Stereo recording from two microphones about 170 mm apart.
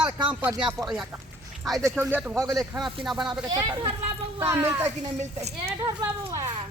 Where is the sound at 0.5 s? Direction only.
25° right (ahead or behind).